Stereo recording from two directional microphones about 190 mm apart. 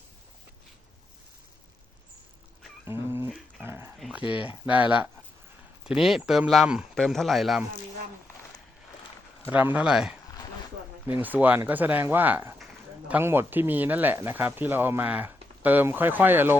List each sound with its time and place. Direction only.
2.8 s a sound: 15° right (ahead or behind)
3.6 s dog: 10° right (ahead or behind)
3.9 s speech: 5° right (ahead or behind)
9.5 s speech: 10° right (ahead or behind)